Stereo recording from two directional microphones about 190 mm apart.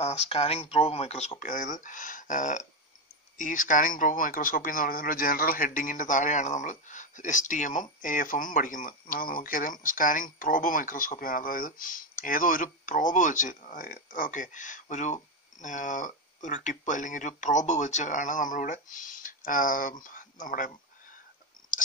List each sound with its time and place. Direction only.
0.0 s speech: 35° left (ahead or behind)